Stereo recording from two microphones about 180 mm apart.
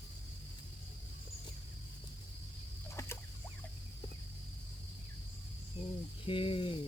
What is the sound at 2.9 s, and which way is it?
Rodents, 15° left (ahead or behind).